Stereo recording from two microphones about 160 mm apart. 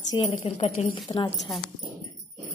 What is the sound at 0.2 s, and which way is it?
Speech, 35° left (ahead or behind).